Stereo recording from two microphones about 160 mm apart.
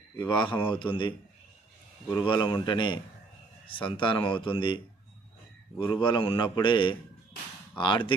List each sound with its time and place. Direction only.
0.2 s speech: 30° left (ahead or behind)
2.1 s speech: 30° left (ahead or behind)
6.0 s speech: 30° left (ahead or behind)